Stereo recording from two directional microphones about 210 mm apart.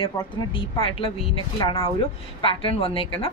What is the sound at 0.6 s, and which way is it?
A woman's voice, 25° left (ahead or behind).